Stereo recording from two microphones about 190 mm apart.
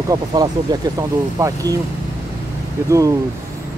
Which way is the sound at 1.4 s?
20° right (ahead or behind).